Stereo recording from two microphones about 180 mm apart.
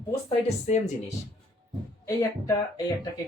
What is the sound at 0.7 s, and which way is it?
Speech, 40° left (ahead or behind).